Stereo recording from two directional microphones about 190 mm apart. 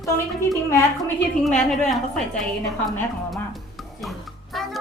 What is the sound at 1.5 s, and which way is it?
A woman's voice, centre (ahead or behind).